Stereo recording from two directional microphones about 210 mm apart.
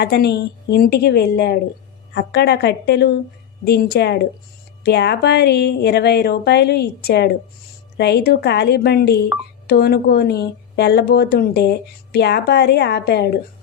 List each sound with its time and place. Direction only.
0.0 s speech: 50° left (ahead or behind)